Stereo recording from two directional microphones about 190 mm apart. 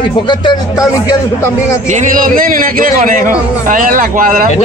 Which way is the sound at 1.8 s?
45° right (ahead or behind).